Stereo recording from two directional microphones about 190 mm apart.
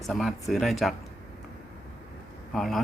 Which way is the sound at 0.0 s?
Centre (ahead or behind).